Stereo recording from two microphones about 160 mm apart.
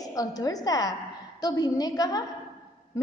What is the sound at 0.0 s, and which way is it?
A woman's voice, 25° left (ahead or behind).